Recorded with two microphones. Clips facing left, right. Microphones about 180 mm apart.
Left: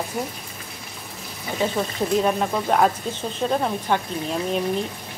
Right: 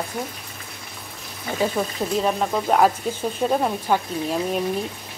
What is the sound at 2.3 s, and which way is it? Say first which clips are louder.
Frying: even; centre (ahead or behind).